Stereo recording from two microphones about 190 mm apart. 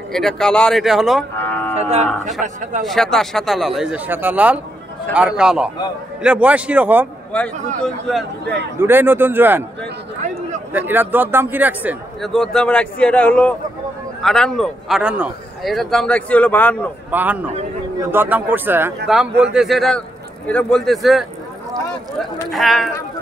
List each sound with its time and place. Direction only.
0.1 s a man's voice: 5° left (ahead or behind)
1.4 s music: 10° left (ahead or behind)
1.8 s cattle: 35° right (ahead or behind)
2.8 s a man's voice: centre (ahead or behind)
8.7 s a man's voice: 10° right (ahead or behind)
10.7 s a man's voice: 10° right (ahead or behind); by 16.9 s 10° left (ahead or behind)
17.1 s a man's voice: 10° right (ahead or behind)
22.5 s a man's voice: centre (ahead or behind)